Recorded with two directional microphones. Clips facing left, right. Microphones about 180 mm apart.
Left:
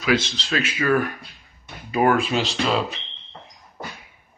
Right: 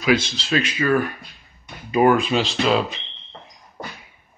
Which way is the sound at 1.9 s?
15° right (ahead or behind).